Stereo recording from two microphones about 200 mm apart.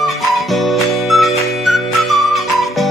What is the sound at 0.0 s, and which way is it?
Music, centre (ahead or behind).